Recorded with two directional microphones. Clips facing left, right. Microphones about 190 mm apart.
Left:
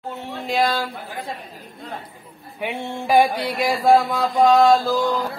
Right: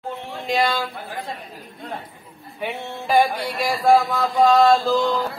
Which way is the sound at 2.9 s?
10° left (ahead or behind).